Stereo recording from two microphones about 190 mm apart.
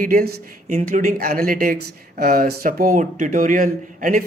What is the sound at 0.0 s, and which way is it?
Speech, 50° right (ahead or behind).